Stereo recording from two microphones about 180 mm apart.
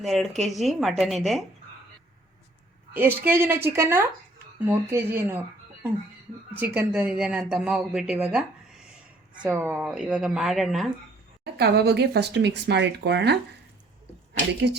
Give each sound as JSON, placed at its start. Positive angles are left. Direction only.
{"t": 0.0, "sound": "speech", "side_deg": 0}
{"t": 2.9, "sound": "a woman's voice", "side_deg": -10}
{"t": 6.6, "sound": "speech", "side_deg": -10}
{"t": 11.5, "sound": "speech", "side_deg": -65}
{"t": 14.6, "sound": "speech", "side_deg": -65}